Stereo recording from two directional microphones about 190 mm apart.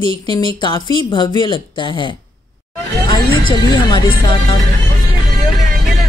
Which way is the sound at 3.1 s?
25° left (ahead or behind).